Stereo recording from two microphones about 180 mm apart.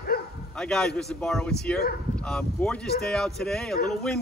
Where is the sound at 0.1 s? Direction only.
60° left (ahead or behind).